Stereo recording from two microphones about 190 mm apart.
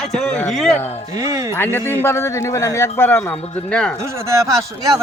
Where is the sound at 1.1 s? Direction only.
15° right (ahead or behind).